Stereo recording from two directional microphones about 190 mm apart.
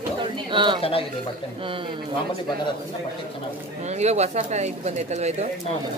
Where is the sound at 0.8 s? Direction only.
30° left (ahead or behind).